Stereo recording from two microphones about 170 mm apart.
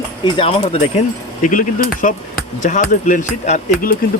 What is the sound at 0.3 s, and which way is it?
Speech, 35° left (ahead or behind).